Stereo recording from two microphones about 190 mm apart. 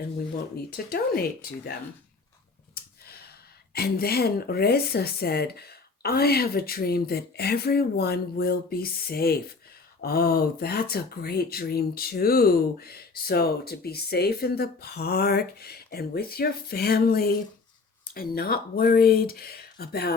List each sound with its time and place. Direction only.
0.9 s speech: 50° left (ahead or behind)
2.7 s a sound: 55° left (ahead or behind)
3.7 s speech: 55° left (ahead or behind)